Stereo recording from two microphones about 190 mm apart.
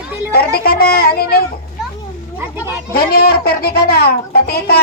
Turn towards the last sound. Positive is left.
turn(degrees=55)  # may be behind; listen again after turning